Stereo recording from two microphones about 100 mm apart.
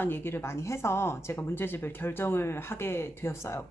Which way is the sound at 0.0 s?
20° left (ahead or behind).